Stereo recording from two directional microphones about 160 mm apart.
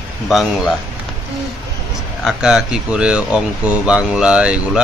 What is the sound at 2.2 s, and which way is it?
Speech, 5° right (ahead or behind).